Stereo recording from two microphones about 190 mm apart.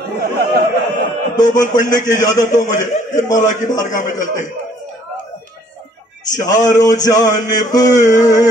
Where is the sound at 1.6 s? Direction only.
45° left (ahead or behind).